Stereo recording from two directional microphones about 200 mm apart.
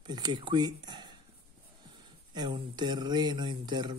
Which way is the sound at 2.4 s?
25° right (ahead or behind).